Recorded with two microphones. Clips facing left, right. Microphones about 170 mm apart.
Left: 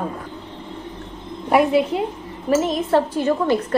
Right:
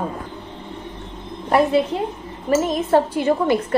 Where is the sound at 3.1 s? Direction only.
10° right (ahead or behind).